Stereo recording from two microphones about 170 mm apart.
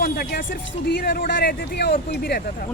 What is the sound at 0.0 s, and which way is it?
Speech, 65° left (ahead or behind).